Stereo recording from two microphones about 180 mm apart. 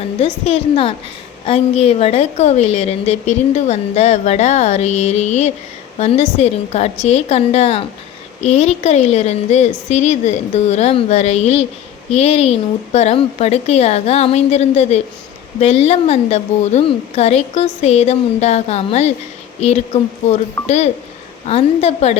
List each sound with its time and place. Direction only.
0.2 s a woman's voice: 35° left (ahead or behind)